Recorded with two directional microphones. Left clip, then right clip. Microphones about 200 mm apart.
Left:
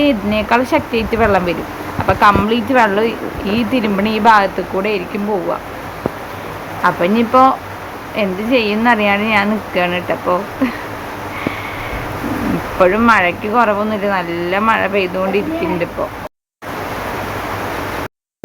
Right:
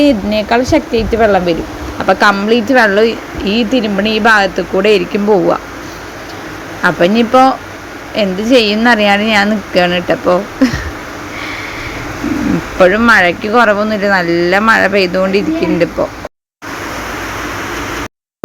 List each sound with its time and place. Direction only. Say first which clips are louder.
0.0 s speech: right 4 dB; 20° right (ahead or behind)
4.8 s speech: right 10 dB; 35° right (ahead or behind)
6.8 s speech: right 4 dB; 25° right (ahead or behind)
12.8 s speech: right 4 dB; 20° right (ahead or behind)